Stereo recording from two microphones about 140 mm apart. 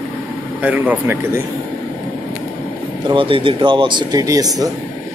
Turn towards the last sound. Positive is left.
turn(degrees=-25)  # may be behind; listen again after turning